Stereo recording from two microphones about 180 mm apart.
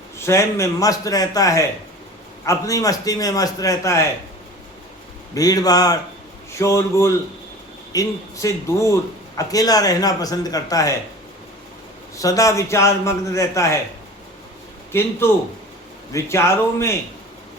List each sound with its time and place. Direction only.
0.2 s a man's voice: 15° left (ahead or behind)
5.3 s a man's voice: 20° left (ahead or behind)
12.1 s a man's voice: 20° left (ahead or behind)
15.2 s a man's voice: 15° left (ahead or behind)